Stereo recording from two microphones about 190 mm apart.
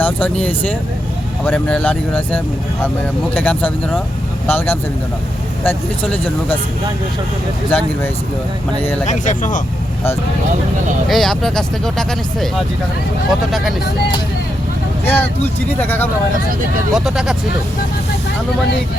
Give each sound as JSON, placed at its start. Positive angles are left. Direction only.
{"t": 0.0, "sound": "speech", "side_deg": 10}
{"t": 7.7, "sound": "speech", "side_deg": 5}
{"t": 9.0, "sound": "speech", "side_deg": 40}
{"t": 11.1, "sound": "speech", "side_deg": 0}
{"t": 15.0, "sound": "speech", "side_deg": 10}
{"t": 16.9, "sound": "speech", "side_deg": 0}